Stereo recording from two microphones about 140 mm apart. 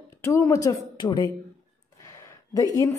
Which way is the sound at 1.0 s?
35° left (ahead or behind).